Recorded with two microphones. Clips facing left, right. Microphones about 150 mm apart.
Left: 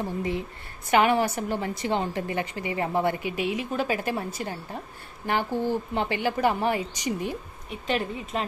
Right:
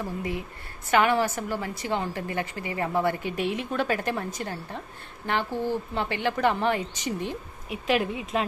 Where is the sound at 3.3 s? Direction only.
5° left (ahead or behind).